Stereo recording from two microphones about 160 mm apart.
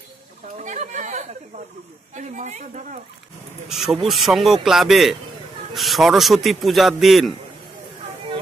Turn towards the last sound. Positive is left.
turn(degrees=0)  # may be behind; listen again after turning